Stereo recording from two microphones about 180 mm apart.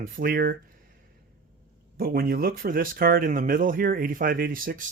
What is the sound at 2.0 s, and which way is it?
Speech, 55° right (ahead or behind).